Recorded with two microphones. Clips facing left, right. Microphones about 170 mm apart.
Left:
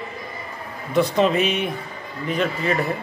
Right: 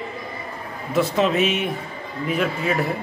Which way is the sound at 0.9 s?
Centre (ahead or behind).